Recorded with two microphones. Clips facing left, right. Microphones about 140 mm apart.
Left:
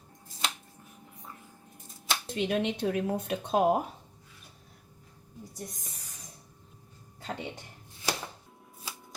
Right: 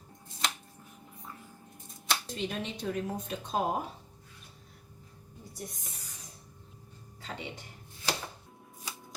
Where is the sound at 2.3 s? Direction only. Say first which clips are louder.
Left 7 dB; 60° left (ahead or behind).